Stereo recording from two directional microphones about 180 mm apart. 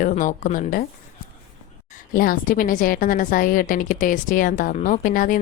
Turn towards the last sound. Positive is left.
turn(degrees=45)  # may be behind; listen again after turning